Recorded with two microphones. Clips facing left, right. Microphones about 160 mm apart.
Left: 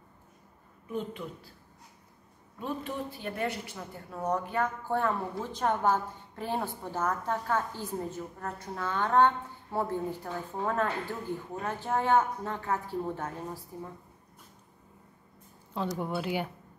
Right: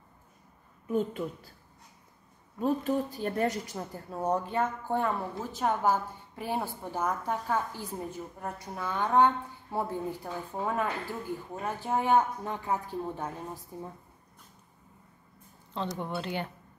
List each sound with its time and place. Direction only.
0.8 s a woman's voice: 45° right (ahead or behind)
2.6 s a woman's voice: 40° right (ahead or behind); by 13.6 s 15° right (ahead or behind)
15.7 s speech: 10° left (ahead or behind)